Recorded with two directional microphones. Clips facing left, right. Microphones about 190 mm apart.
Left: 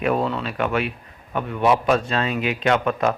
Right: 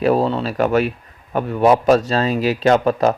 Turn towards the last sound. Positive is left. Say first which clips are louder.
# right 5 dB
turn(degrees=-35)  # may be behind; listen again after turning